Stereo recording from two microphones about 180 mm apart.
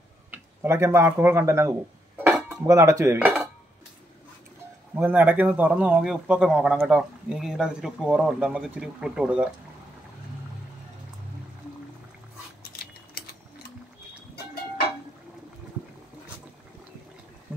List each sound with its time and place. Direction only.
0.3 s speech: 10° right (ahead or behind)
2.6 s dishes: 20° right (ahead or behind)
4.9 s speech: 10° right (ahead or behind)
12.7 s a sound: 60° left (ahead or behind)